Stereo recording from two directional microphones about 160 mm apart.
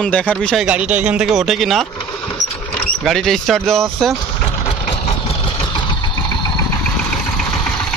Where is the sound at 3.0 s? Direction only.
5° left (ahead or behind).